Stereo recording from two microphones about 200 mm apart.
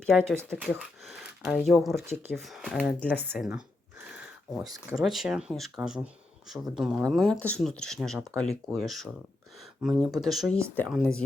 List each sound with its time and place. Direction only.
0.3 s speech: centre (ahead or behind)
4.6 s speech: 20° right (ahead or behind)
5.0 s speech: centre (ahead or behind)